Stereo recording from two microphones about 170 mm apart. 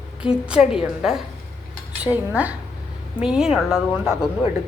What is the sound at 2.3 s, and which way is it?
A woman's voice, 10° right (ahead or behind).